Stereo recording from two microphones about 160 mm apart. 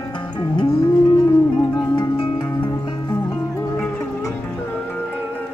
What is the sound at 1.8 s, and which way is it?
Music, 25° left (ahead or behind).